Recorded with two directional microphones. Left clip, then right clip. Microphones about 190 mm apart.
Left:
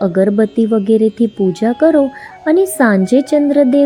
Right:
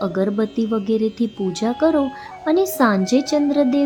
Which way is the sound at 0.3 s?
5° left (ahead or behind).